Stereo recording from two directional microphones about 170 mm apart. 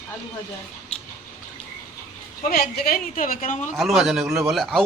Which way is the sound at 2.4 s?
60° left (ahead or behind).